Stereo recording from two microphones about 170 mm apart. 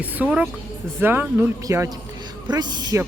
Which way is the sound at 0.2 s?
5° right (ahead or behind).